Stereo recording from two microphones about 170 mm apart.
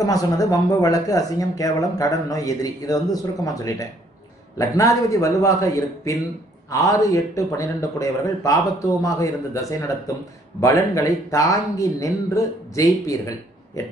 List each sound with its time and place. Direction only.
0.0 s speech: 20° left (ahead or behind)